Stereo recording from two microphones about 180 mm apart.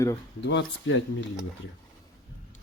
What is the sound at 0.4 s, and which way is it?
Speech, 85° left.